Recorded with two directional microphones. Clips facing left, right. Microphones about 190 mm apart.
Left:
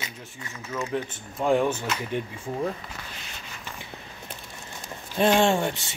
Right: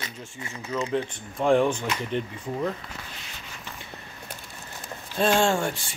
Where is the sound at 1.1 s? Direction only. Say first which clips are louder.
Right 2 dB; 5° left (ahead or behind).